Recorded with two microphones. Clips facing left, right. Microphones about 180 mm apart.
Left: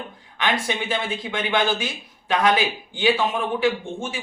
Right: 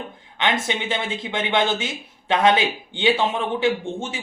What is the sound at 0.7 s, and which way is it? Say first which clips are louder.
Speech: even; 25° right (ahead or behind).